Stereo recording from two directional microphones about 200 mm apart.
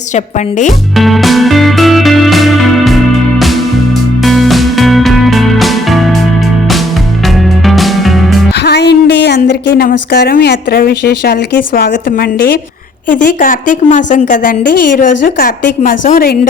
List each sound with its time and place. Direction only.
0.1 s a woman's voice: 35° left (ahead or behind)
0.9 s music: centre (ahead or behind)
7.3 s music: centre (ahead or behind)
8.5 s a woman's voice: 55° left (ahead or behind)